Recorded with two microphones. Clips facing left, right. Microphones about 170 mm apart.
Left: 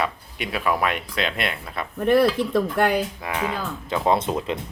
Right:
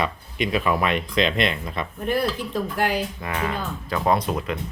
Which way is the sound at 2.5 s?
55° left (ahead or behind).